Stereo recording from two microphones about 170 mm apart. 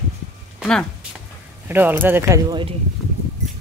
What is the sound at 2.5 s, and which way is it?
Speech, 30° right (ahead or behind).